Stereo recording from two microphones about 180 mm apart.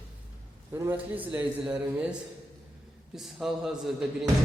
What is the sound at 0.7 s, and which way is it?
Speech, 10° right (ahead or behind).